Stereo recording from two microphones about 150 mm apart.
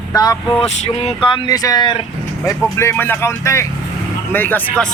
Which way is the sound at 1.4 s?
25° left (ahead or behind).